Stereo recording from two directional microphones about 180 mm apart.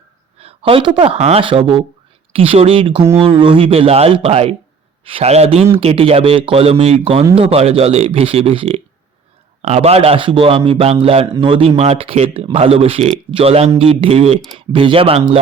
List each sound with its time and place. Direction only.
0.3 s speech: 30° right (ahead or behind)